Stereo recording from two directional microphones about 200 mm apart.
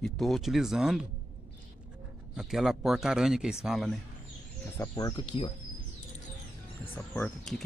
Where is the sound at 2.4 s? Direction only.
Centre (ahead or behind).